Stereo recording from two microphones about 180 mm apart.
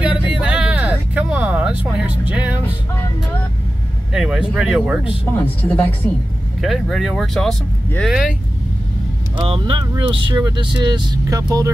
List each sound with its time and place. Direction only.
0.0 s a sound: 5° right (ahead or behind)
4.1 s speech: centre (ahead or behind)
5.3 s a woman's voice: 10° left (ahead or behind)
9.4 s speech: 25° right (ahead or behind)